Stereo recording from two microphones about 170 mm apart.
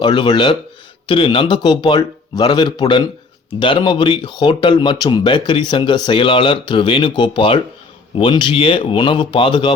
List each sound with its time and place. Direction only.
0.0 s speech: 25° left (ahead or behind)